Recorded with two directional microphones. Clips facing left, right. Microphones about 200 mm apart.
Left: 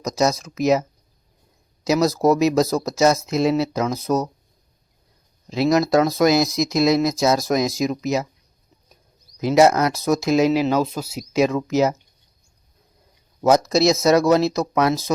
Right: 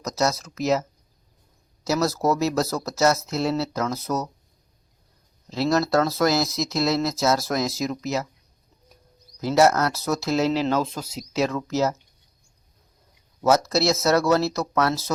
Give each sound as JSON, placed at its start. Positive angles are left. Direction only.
{"t": 0.0, "sound": "speech", "side_deg": 15}
{"t": 5.5, "sound": "speech", "side_deg": 15}
{"t": 9.4, "sound": "speech", "side_deg": 15}
{"t": 13.4, "sound": "speech", "side_deg": 15}